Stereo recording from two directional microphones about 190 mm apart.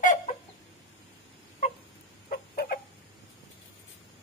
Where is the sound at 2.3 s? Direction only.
55° left (ahead or behind).